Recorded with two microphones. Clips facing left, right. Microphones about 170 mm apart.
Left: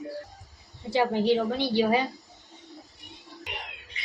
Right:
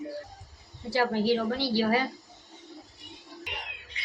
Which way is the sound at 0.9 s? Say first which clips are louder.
Left 2 dB; 20° left (ahead or behind).